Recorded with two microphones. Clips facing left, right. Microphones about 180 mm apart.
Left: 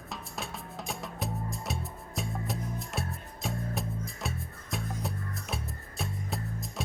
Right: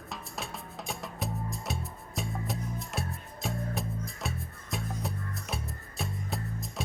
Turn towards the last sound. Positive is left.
turn(degrees=0)  # may be behind; listen again after turning